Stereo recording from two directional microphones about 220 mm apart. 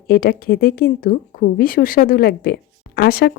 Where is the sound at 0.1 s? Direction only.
45° left (ahead or behind).